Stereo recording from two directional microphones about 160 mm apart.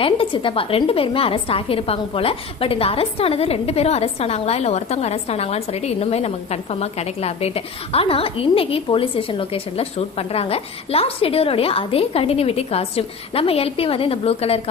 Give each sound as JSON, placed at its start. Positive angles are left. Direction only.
{"t": 0.0, "sound": "a woman's voice", "side_deg": 35}